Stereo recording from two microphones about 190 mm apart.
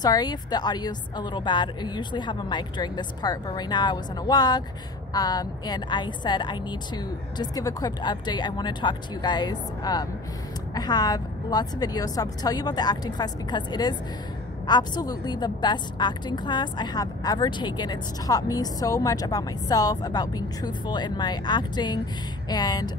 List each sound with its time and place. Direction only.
0.0 s a woman's voice: 20° left (ahead or behind)